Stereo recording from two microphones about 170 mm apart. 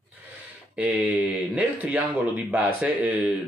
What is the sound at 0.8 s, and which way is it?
Speech, 10° right (ahead or behind).